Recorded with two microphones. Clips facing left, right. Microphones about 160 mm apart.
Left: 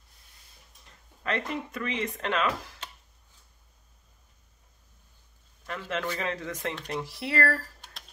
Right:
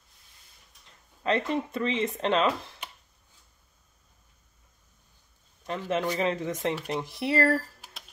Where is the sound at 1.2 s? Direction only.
25° right (ahead or behind).